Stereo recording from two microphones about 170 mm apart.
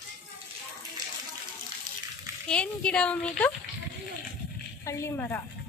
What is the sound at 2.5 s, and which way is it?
A woman's voice, 5° left (ahead or behind).